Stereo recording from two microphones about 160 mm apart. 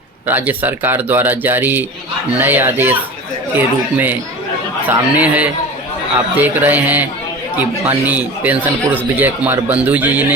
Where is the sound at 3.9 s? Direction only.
10° right (ahead or behind).